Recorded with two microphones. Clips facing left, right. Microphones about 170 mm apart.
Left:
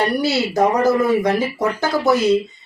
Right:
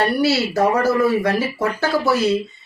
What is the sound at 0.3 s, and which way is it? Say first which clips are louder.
Speech: even; 15° left (ahead or behind).